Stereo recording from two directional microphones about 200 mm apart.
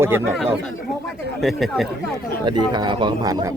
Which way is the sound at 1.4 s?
Centre (ahead or behind).